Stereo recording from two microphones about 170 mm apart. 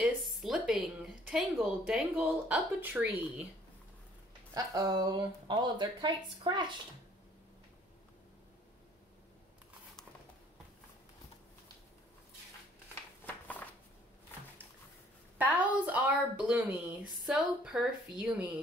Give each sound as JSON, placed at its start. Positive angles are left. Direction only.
{"t": 0.0, "sound": "speech", "side_deg": 0}
{"t": 4.6, "sound": "speech", "side_deg": -20}
{"t": 13.2, "sound": "a sound", "side_deg": 10}
{"t": 15.3, "sound": "a woman's voice", "side_deg": -10}